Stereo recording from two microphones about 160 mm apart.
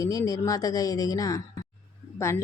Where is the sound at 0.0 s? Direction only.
20° left (ahead or behind).